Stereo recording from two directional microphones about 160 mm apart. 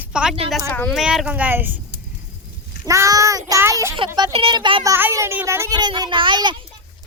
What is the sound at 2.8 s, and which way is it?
A child's voice, 20° right (ahead or behind).